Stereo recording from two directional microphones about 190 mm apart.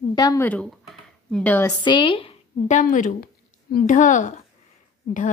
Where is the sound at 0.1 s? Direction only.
20° left (ahead or behind).